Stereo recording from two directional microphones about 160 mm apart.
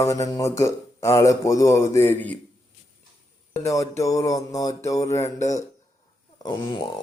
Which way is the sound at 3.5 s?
20° left (ahead or behind).